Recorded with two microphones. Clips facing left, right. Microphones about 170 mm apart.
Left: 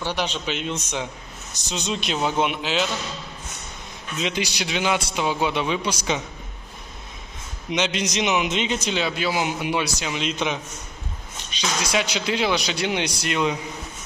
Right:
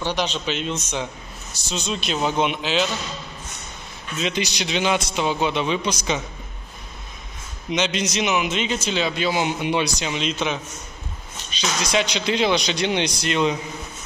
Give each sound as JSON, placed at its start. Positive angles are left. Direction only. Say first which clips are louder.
{"t": 0.0, "sound": "a man's voice", "louder": "right 2 dB", "side_deg": 10}
{"t": 4.2, "sound": "a man's voice", "louder": "right 1 dB", "side_deg": 10}
{"t": 7.7, "sound": "a man's voice", "louder": "right 1 dB", "side_deg": 10}